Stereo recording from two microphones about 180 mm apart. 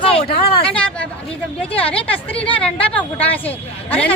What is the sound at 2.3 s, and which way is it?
Speech, 30° left (ahead or behind).